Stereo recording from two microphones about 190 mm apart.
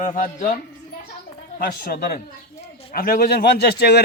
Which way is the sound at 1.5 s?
50° left (ahead or behind).